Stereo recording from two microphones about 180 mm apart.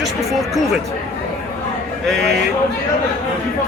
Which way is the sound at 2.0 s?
Centre (ahead or behind).